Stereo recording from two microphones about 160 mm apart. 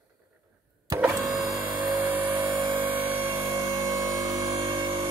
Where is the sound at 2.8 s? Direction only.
10° right (ahead or behind).